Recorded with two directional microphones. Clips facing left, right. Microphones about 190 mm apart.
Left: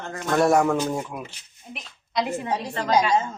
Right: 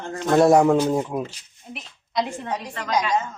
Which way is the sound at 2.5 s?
30° left (ahead or behind).